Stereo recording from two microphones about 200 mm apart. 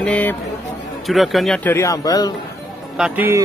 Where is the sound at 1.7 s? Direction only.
15° left (ahead or behind).